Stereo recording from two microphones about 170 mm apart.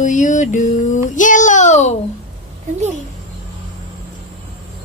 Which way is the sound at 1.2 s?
50° left (ahead or behind).